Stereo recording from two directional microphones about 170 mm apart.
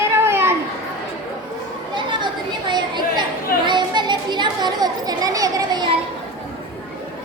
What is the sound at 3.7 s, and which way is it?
Children playing, 25° right (ahead or behind).